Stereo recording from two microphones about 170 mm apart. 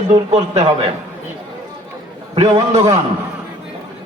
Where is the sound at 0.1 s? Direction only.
40° right (ahead or behind).